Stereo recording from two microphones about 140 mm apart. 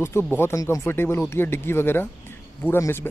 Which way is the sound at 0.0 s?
15° left (ahead or behind).